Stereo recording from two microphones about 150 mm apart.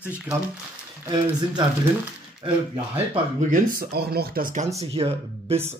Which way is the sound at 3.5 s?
85° right.